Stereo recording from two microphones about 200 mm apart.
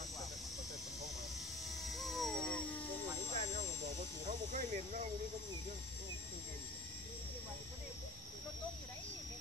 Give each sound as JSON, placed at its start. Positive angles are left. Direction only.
{"t": 1.8, "sound": "dog", "side_deg": 0}
{"t": 3.3, "sound": "vehicle", "side_deg": -35}
{"t": 4.3, "sound": "snake", "side_deg": -35}